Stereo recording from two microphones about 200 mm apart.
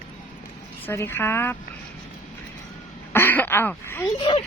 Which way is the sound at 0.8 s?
10° left (ahead or behind).